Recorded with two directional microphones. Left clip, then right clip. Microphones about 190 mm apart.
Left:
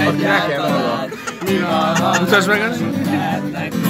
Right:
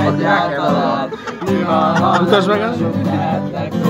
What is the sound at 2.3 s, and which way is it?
Speech, 5° right (ahead or behind).